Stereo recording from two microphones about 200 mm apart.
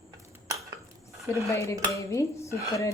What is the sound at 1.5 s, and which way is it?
Speech, 15° left (ahead or behind).